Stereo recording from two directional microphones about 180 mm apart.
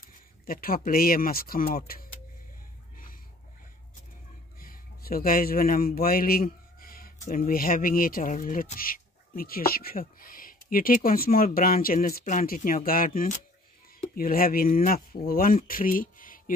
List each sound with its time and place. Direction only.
0.5 s speech: 55° left (ahead or behind)
4.6 s a man's voice: 55° left (ahead or behind)